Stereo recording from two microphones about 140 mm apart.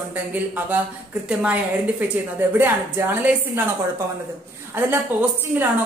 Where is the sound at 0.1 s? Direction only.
10° right (ahead or behind).